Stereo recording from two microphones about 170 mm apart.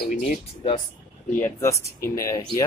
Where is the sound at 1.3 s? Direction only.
15° left (ahead or behind).